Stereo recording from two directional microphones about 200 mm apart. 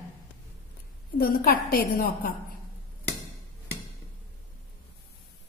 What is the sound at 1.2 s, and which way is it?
A woman's voice, 50° left (ahead or behind).